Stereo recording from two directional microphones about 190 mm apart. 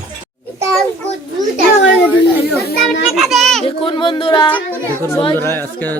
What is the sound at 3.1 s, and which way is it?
Children playing, centre (ahead or behind).